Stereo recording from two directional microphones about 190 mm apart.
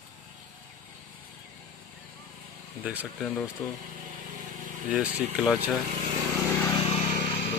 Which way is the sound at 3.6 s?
20° left (ahead or behind).